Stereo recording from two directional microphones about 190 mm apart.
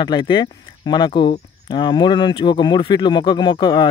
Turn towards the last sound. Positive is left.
turn(degrees=25)  # may be behind; listen again after turning